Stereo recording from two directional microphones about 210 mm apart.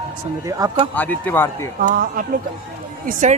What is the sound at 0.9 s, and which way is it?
Speech, 10° left (ahead or behind).